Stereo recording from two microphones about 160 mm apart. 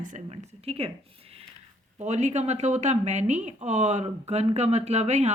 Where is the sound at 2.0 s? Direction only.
45° right (ahead or behind).